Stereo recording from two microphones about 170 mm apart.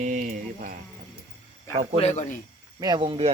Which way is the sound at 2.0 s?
45° left (ahead or behind).